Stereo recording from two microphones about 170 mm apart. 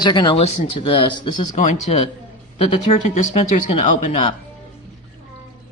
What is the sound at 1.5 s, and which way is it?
Speech, 40° left (ahead or behind).